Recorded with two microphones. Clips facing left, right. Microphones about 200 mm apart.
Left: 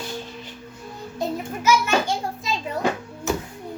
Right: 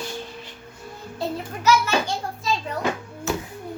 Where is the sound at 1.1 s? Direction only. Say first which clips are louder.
Left 2 dB; 20° left (ahead or behind).